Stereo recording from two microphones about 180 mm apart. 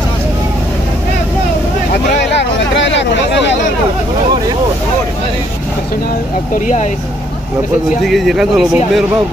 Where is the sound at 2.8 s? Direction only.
80° left.